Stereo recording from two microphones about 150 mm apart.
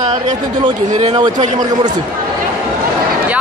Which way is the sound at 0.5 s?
30° right (ahead or behind).